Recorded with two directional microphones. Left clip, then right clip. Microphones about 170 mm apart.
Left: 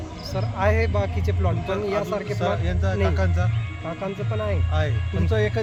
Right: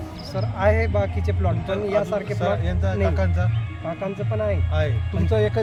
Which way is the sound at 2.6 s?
15° right (ahead or behind).